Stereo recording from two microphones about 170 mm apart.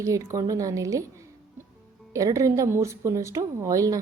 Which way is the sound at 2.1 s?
20° right (ahead or behind).